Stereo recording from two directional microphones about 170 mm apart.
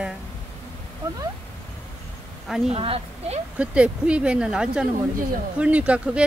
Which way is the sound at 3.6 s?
5° right (ahead or behind).